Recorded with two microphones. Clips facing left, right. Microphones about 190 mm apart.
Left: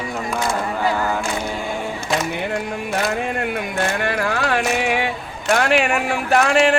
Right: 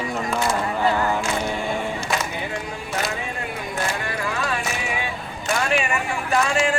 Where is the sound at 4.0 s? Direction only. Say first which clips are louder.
Left 6 dB; 70° left (ahead or behind).